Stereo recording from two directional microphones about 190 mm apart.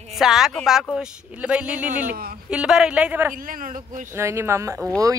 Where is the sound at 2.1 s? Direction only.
55° right (ahead or behind).